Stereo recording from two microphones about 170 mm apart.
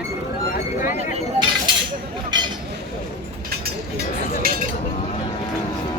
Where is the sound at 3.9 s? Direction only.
65° right (ahead or behind).